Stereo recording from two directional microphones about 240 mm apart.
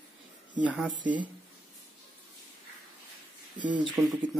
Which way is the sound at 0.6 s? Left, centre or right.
Centre.